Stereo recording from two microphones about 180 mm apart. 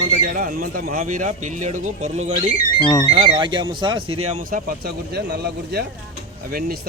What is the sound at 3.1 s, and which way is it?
Speech, 30° right (ahead or behind).